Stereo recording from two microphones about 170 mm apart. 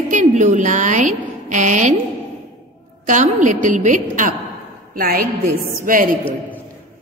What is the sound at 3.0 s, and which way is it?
A woman's voice, 45° right (ahead or behind).